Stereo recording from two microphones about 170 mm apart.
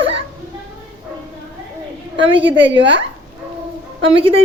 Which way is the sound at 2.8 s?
90° right.